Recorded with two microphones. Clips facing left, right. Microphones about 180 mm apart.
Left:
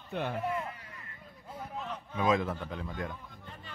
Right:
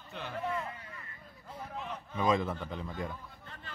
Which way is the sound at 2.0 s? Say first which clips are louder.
Left 1 dB; 10° left (ahead or behind).